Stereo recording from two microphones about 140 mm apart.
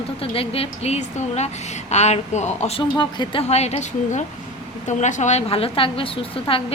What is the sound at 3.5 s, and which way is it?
A woman's voice, 50° left (ahead or behind).